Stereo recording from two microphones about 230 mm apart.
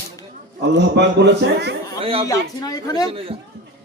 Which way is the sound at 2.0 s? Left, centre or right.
Right.